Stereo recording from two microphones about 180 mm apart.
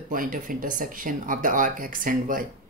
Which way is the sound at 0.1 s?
50° right (ahead or behind).